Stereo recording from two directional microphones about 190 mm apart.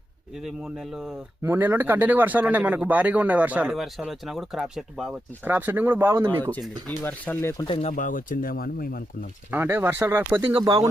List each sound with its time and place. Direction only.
0.4 s a man's voice: 5° right (ahead or behind)
6.8 s speech: 10° left (ahead or behind)
7.7 s speech: 35° left (ahead or behind); by 9.0 s 50° left (ahead or behind)
9.5 s a man's voice: 10° right (ahead or behind)
10.4 s speech: 25° right (ahead or behind)